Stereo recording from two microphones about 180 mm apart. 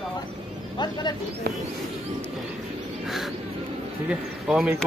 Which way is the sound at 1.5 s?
60° right (ahead or behind).